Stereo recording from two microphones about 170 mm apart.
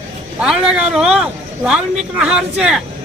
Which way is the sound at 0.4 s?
Centre (ahead or behind).